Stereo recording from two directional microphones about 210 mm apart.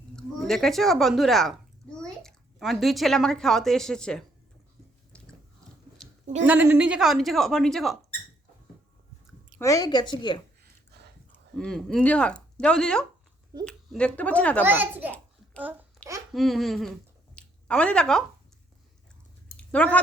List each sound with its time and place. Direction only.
0.2 s a child's voice: centre (ahead or behind)
5.1 s biting: 5° left (ahead or behind)
6.4 s a woman's voice: 10° right (ahead or behind)
9.6 s speech: 15° left (ahead or behind)
10.6 s a sound: 50° right (ahead or behind)
11.5 s a woman's voice: centre (ahead or behind)
14.6 s a child's voice: 10° right (ahead or behind)
16.3 s speech: centre (ahead or behind)
19.5 s a sound: 5° left (ahead or behind)